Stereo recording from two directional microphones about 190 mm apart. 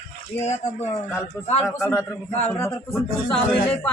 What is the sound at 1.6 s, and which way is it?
Speech, 5° left (ahead or behind).